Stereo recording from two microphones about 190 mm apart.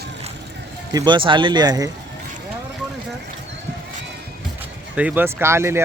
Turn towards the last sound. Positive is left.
turn(degrees=-15)  # may be behind; listen again after turning